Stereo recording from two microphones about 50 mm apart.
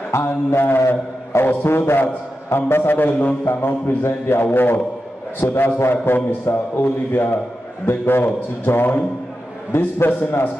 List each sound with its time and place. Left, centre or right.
0.1 s a sound: left
2.5 s a man's voice: left
3.4 s a man's voice: left
5.4 s a man's voice: left
5.8 s a man's voice: left